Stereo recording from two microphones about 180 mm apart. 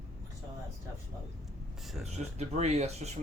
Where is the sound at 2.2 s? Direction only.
40° right (ahead or behind).